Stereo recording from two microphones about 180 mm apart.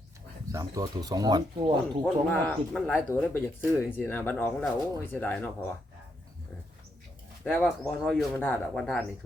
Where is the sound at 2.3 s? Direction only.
10° left (ahead or behind).